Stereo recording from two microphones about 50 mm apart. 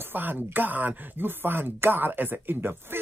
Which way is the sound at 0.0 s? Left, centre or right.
Right.